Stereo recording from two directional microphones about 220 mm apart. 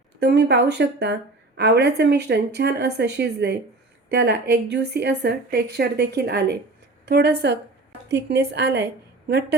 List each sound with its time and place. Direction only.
0.2 s a woman's voice: 50° right (ahead or behind)